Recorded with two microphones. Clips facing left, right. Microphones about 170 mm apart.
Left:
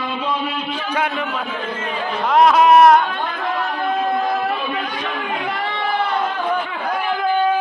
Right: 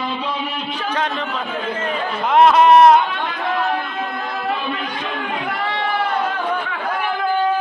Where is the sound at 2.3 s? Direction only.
Centre (ahead or behind).